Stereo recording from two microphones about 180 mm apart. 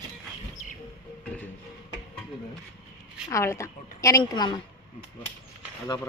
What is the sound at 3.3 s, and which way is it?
A woman's voice, 15° left (ahead or behind).